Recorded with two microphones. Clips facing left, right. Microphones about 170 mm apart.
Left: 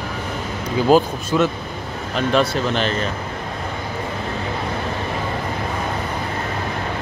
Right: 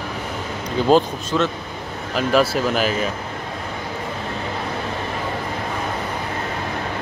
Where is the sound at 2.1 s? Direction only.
5° right (ahead or behind).